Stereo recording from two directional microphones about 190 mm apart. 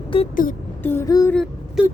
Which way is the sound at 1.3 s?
Centre (ahead or behind).